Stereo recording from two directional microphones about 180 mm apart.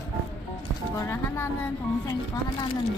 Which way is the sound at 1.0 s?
15° left (ahead or behind).